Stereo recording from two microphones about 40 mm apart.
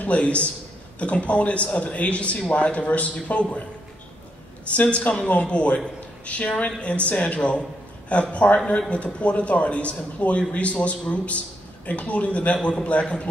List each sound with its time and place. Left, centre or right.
0.0 s a man's voice: left
4.6 s a man's voice: left